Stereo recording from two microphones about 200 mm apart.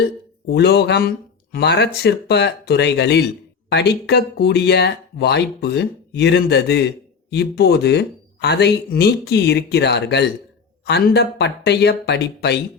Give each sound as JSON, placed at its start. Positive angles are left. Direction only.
{"t": 0.4, "sound": "speech", "side_deg": 55}